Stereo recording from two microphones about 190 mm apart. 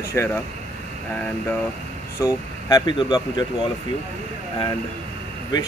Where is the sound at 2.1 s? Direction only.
20° left (ahead or behind).